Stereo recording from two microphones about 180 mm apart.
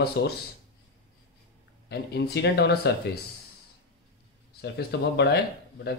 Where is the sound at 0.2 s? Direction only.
70° left (ahead or behind).